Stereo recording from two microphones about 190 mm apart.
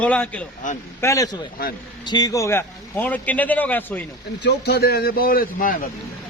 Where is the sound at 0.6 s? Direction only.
40° left (ahead or behind).